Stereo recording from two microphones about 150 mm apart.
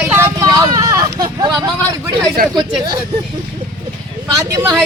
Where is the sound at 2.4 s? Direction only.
75° right (ahead or behind).